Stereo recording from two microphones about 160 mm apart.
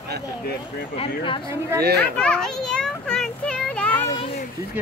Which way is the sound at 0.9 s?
35° left (ahead or behind).